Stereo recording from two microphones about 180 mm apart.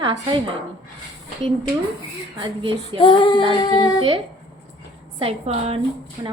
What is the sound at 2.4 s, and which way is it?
Speech, 30° right (ahead or behind).